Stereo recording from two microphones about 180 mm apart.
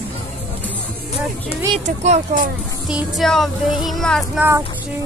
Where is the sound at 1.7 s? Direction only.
40° right (ahead or behind).